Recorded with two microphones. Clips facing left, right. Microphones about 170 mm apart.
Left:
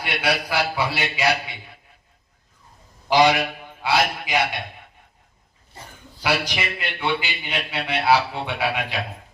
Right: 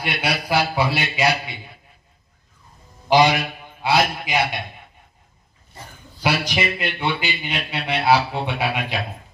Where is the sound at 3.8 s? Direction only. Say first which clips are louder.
Right 2 dB; 25° right (ahead or behind).